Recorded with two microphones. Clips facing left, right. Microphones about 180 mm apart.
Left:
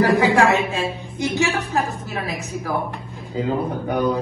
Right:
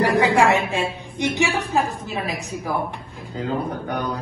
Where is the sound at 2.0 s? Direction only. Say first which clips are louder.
Even; 15° right (ahead or behind).